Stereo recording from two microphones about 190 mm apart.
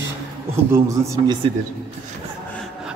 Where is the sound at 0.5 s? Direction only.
15° right (ahead or behind).